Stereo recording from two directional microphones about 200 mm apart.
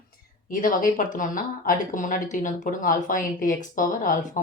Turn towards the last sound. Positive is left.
turn(degrees=40)  # may be behind; listen again after turning